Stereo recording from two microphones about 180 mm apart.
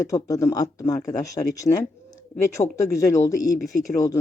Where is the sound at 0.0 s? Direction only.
20° left (ahead or behind).